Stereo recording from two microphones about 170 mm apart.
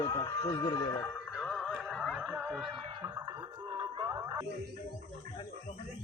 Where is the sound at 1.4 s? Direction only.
5° left (ahead or behind).